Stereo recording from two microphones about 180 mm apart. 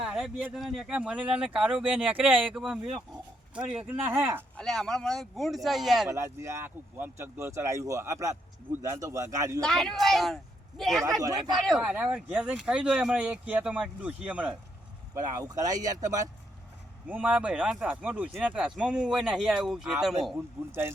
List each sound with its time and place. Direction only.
0.0 s speech: 5° right (ahead or behind)
4.5 s speech: 5° left (ahead or behind)
6.1 s speech: 15° right (ahead or behind)
9.6 s speech: centre (ahead or behind)
11.2 s speech: 20° right (ahead or behind)
11.6 s speech: centre (ahead or behind)
15.1 s speech: 15° right (ahead or behind)
17.1 s speech: 5° right (ahead or behind)